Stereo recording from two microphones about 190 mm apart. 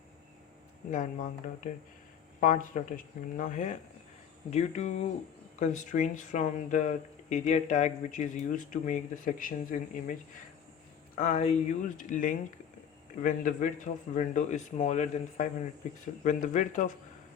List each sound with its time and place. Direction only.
0.9 s speech: 45° left (ahead or behind)